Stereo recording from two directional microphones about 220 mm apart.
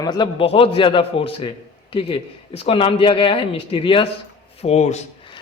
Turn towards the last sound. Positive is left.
turn(degrees=25)  # may be behind; listen again after turning